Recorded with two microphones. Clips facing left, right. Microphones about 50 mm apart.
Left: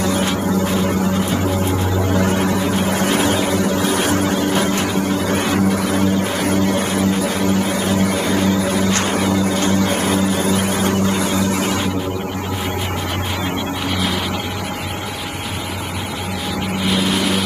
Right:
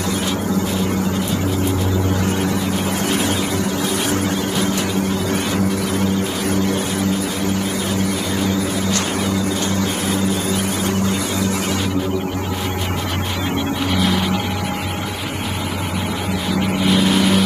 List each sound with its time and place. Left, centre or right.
0.0 s vehicle: left
2.1 s a sound: left
8.9 s music: left
13.9 s vehicle: centre
16.8 s vehicle: centre